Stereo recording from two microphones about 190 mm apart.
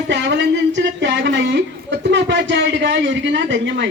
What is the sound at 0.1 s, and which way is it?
A woman's voice, 70° right (ahead or behind).